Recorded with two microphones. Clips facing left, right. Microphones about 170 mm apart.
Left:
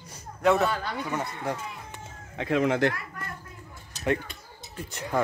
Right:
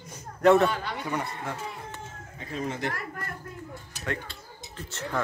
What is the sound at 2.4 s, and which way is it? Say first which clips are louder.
Speech: left 9 dB; 90° left.